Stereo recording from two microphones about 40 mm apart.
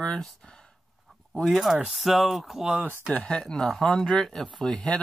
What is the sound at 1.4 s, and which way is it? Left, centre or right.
Speech, centre.